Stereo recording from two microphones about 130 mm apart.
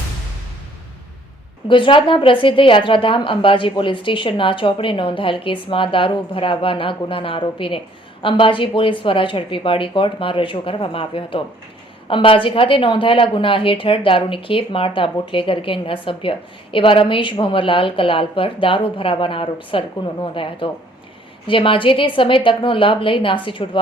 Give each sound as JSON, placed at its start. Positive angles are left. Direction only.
{"t": 1.6, "sound": "a woman's voice", "side_deg": 40}